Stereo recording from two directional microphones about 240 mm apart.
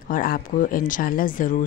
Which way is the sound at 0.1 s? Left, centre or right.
Left.